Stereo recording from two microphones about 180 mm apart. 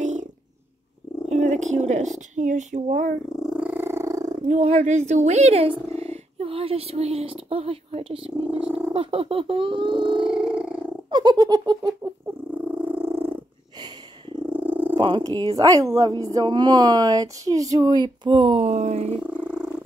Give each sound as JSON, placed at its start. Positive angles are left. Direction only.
{"t": 0.0, "sound": "purr", "side_deg": -40}
{"t": 1.3, "sound": "speech", "side_deg": -40}
{"t": 3.3, "sound": "cat", "side_deg": -5}
{"t": 4.4, "sound": "speech", "side_deg": -40}
{"t": 8.5, "sound": "speech", "side_deg": -5}
{"t": 8.9, "sound": "speech", "side_deg": -30}
{"t": 10.2, "sound": "purr", "side_deg": -5}
{"t": 11.1, "sound": "giggle", "side_deg": -25}
{"t": 12.4, "sound": "purr", "side_deg": -10}
{"t": 14.5, "sound": "purr", "side_deg": -10}
{"t": 15.0, "sound": "speech", "side_deg": -30}
{"t": 19.2, "sound": "purr", "side_deg": -5}